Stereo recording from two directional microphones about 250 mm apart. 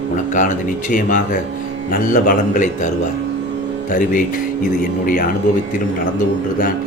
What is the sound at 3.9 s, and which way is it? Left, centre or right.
Speech, left.